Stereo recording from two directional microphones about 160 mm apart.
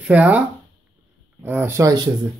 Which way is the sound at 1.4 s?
15° right (ahead or behind).